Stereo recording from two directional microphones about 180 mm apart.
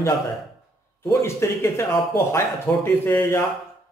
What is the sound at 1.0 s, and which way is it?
A man's voice, 15° left (ahead or behind).